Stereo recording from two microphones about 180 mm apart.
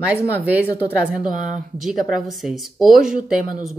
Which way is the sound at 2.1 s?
Centre (ahead or behind).